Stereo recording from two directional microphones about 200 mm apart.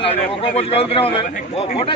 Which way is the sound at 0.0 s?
30° left (ahead or behind).